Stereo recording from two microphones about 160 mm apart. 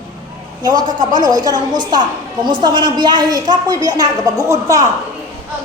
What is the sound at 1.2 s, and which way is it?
A woman's voice, 25° right (ahead or behind).